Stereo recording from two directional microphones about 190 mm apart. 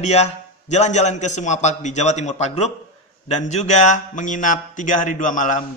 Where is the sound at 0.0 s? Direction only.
35° left (ahead or behind).